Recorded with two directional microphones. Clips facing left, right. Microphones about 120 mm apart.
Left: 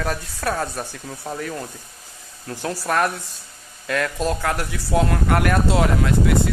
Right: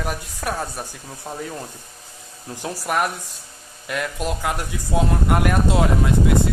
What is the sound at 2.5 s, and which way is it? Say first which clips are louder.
Speech: left 1 dB; 15° right (ahead or behind).